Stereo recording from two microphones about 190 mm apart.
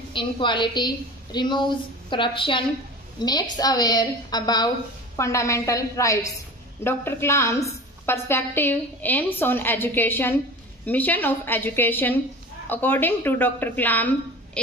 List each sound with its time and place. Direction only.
0.1 s a woman's voice: 25° left (ahead or behind); by 14.6 s 10° left (ahead or behind)